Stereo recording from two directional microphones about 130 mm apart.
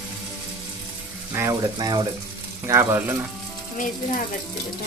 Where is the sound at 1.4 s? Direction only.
25° right (ahead or behind).